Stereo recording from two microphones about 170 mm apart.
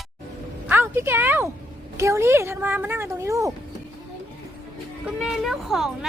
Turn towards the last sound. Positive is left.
turn(degrees=0)  # may be behind; listen again after turning